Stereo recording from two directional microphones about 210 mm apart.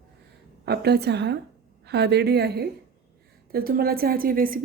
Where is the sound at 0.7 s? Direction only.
50° right (ahead or behind).